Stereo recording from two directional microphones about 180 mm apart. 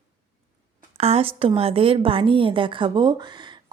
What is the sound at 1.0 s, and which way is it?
A woman's voice, 35° right (ahead or behind).